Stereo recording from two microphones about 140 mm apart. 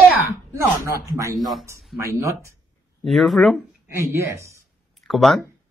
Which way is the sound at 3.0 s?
Centre (ahead or behind).